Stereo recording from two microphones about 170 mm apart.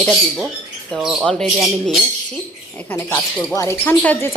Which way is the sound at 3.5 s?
15° left (ahead or behind).